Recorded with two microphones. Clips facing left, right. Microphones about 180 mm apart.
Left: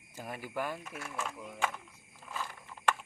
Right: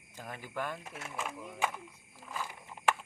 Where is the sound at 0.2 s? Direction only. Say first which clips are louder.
Left 2 dB; 10° left (ahead or behind).